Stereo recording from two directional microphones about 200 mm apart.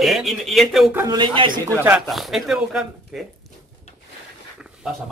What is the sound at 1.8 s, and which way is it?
A man's voice, 5° right (ahead or behind).